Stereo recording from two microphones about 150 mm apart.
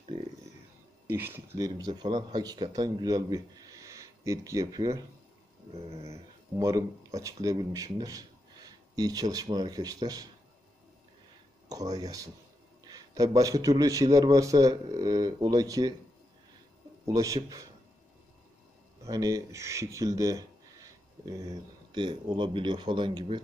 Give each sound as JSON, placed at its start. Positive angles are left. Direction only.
{"t": 1.0, "sound": "speech", "side_deg": -15}
{"t": 6.6, "sound": "speech", "side_deg": -25}
{"t": 11.7, "sound": "speech", "side_deg": -25}
{"t": 17.0, "sound": "speech", "side_deg": -20}
{"t": 19.0, "sound": "speech", "side_deg": -25}